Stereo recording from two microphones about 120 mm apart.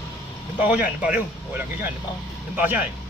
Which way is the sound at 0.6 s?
10° right (ahead or behind).